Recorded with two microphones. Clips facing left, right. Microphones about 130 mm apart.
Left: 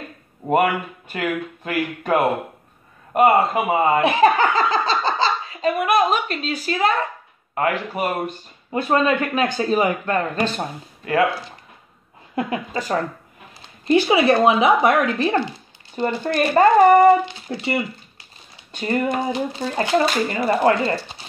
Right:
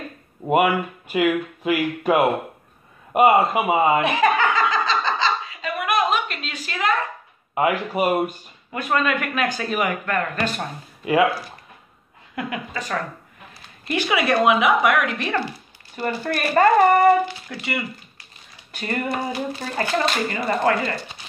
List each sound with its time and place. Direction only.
0.5 s speech: 10° right (ahead or behind)
4.0 s a sound: 35° left (ahead or behind)
7.5 s speech: 10° right (ahead or behind)
8.7 s speech: 30° left (ahead or behind)
11.1 s speech: 15° right (ahead or behind)
12.4 s a woman's voice: 30° left (ahead or behind)